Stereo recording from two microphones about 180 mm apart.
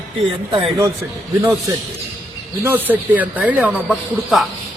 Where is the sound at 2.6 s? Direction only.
10° right (ahead or behind).